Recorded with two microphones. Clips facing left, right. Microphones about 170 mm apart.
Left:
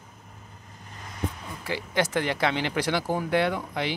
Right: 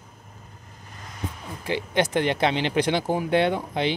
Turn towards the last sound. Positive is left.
turn(degrees=-25)  # may be behind; listen again after turning